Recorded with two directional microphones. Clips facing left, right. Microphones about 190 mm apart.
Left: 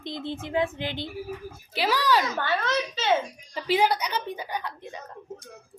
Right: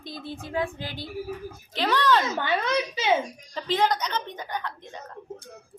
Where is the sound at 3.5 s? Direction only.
10° left (ahead or behind).